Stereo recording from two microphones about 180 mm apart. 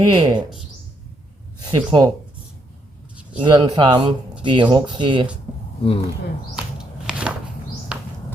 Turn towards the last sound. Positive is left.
turn(degrees=-5)  # may be behind; listen again after turning